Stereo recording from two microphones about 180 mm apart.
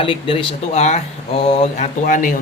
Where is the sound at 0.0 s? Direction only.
30° left (ahead or behind).